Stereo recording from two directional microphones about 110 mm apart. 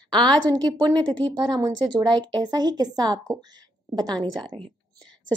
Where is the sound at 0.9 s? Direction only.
15° left (ahead or behind).